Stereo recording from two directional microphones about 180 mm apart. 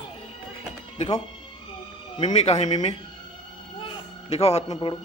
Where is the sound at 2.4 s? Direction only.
40° left (ahead or behind).